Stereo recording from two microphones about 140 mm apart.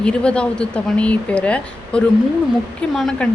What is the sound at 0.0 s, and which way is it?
A woman's voice, 5° left (ahead or behind).